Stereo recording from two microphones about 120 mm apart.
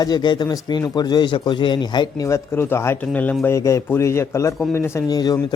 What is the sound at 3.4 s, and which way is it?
Speech, 25° left (ahead or behind).